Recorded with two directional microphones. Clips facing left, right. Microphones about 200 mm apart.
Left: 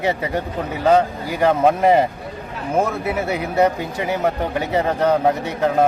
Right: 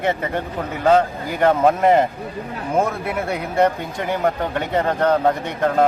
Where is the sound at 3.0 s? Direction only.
5° left (ahead or behind).